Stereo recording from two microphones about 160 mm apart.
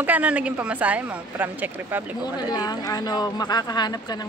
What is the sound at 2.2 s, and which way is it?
Speech, 25° left (ahead or behind).